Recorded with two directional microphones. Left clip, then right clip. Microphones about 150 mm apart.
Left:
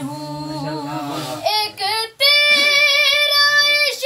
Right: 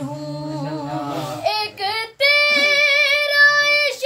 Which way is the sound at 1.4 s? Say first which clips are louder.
Left 2 dB; 25° right (ahead or behind).